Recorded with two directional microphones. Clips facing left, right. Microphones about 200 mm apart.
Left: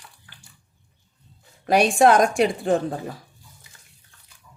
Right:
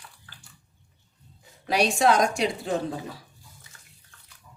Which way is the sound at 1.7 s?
50° left (ahead or behind).